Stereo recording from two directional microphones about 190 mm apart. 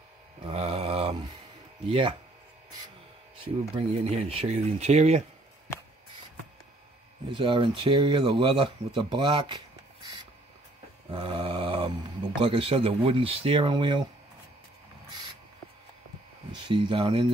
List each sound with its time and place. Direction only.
0.5 s mantra: 30° right (ahead or behind)
1.9 s speech: 25° right (ahead or behind)
3.4 s speech: 30° right (ahead or behind)
5.7 s a sound: 15° left (ahead or behind)
7.2 s speech: 25° right (ahead or behind)
11.1 s a sound: 25° right (ahead or behind)
12.4 s speech: 30° right (ahead or behind)
16.5 s speech: 25° right (ahead or behind)